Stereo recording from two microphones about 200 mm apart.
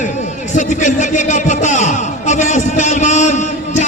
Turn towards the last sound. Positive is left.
turn(degrees=35)  # may be behind; listen again after turning